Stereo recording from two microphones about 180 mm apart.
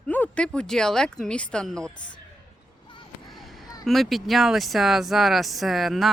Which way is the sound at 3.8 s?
Centre (ahead or behind).